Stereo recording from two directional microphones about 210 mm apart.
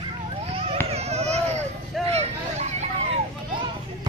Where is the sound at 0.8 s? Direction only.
30° right (ahead or behind).